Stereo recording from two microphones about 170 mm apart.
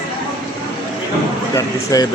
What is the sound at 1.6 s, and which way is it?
Speech, 20° left (ahead or behind).